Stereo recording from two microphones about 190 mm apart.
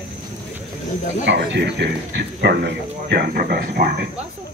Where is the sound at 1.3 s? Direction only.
65° right (ahead or behind).